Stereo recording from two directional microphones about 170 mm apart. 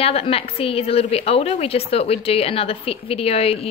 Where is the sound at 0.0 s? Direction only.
35° left (ahead or behind).